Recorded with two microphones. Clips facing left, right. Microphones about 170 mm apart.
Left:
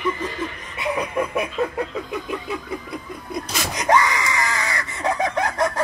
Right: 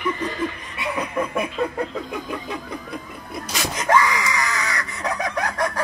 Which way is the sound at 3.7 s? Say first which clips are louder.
Even; 20° left (ahead or behind).